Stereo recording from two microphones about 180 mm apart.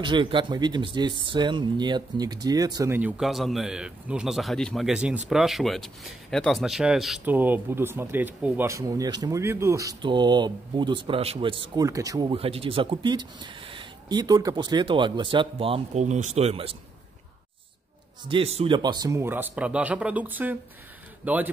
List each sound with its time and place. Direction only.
0.0 s speech: 25° right (ahead or behind)
18.3 s speech: 35° right (ahead or behind); by 21.5 s 10° right (ahead or behind)